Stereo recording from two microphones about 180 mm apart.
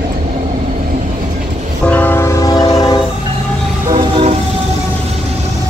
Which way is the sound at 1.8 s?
10° left (ahead or behind).